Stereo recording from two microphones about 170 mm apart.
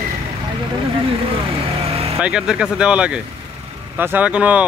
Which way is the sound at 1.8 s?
35° right (ahead or behind).